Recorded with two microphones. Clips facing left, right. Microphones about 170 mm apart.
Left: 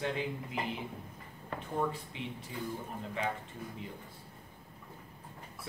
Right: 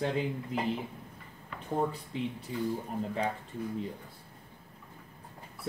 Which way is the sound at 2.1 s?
40° right (ahead or behind).